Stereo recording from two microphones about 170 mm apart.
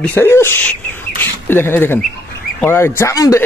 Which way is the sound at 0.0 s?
15° left (ahead or behind).